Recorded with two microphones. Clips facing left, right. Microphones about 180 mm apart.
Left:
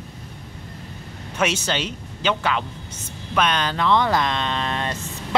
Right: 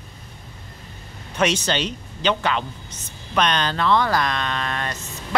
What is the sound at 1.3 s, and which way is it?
Speech, 10° left (ahead or behind).